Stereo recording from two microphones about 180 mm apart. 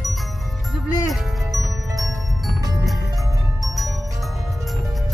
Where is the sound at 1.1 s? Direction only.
Centre (ahead or behind).